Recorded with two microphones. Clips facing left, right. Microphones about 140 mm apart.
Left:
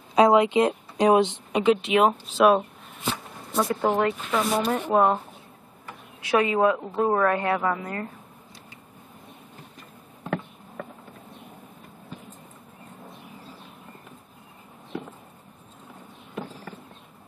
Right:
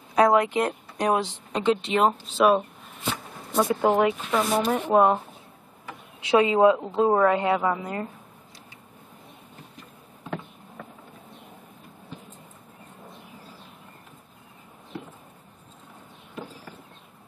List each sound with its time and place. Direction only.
0.1 s a woman's voice: 20° left (ahead or behind)
1.6 s speech: 5° left (ahead or behind)
6.2 s a woman's voice: 20° right (ahead or behind)